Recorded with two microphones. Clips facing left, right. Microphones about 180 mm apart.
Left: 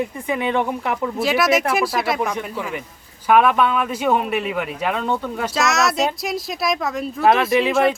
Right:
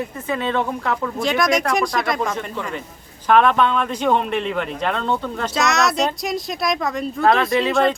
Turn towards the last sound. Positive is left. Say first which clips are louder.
# left 1 dB
turn(degrees=5)  # may be behind; listen again after turning